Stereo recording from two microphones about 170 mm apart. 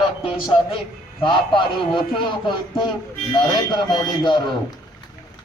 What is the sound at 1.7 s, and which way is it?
A man's voice, 30° left (ahead or behind).